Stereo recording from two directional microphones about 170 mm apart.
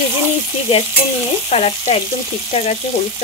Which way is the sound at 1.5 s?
40° left (ahead or behind).